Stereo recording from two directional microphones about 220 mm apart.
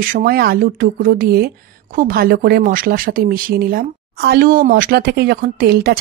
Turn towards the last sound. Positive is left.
turn(degrees=-45)  # may be behind; listen again after turning